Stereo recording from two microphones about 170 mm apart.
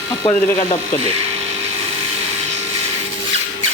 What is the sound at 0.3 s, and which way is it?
Speech, 30° left (ahead or behind).